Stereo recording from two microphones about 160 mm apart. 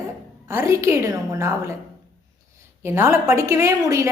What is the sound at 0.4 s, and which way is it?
A woman's voice, 15° right (ahead or behind).